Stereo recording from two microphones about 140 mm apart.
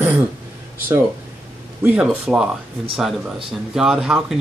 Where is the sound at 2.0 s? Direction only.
5° right (ahead or behind).